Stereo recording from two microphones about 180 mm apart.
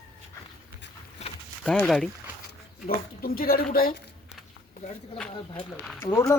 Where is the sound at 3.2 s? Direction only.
55° left (ahead or behind).